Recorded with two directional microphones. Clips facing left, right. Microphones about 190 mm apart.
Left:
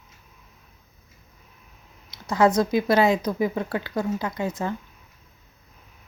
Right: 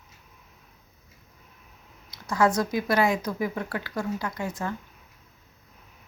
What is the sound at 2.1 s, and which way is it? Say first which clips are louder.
Speech: left 3 dB; 20° left (ahead or behind).